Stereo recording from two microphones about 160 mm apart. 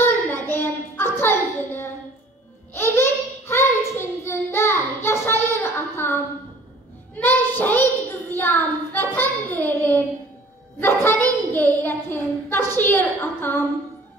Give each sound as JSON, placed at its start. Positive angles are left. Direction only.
{"t": 0.0, "sound": "a sound", "side_deg": 15}
{"t": 2.7, "sound": "child singing", "side_deg": 15}
{"t": 7.2, "sound": "a child's voice", "side_deg": 10}
{"t": 11.1, "sound": "child singing", "side_deg": 10}